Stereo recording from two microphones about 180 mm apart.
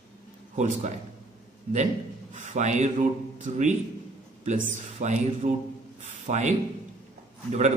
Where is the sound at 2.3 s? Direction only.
40° right (ahead or behind).